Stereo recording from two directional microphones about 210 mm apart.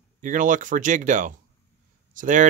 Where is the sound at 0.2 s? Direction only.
40° right (ahead or behind).